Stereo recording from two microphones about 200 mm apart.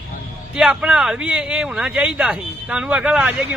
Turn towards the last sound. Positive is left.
turn(degrees=-5)  # may be behind; listen again after turning